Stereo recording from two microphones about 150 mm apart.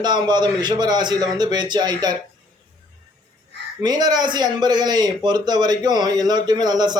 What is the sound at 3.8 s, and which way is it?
A man's voice, 25° right (ahead or behind).